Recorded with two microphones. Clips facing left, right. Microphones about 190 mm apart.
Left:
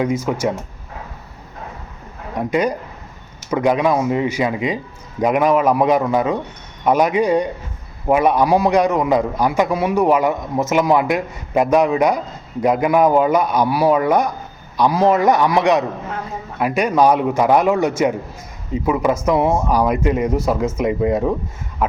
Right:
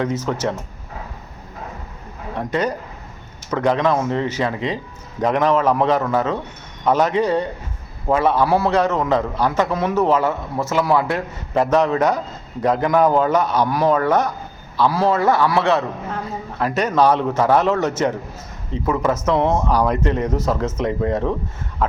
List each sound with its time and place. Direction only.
0.0 s a man's voice: 10° left (ahead or behind)
2.4 s a man's voice: 10° left (ahead or behind)